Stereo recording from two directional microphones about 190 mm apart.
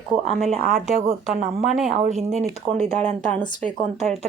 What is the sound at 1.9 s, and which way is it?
Speech, 35° right (ahead or behind).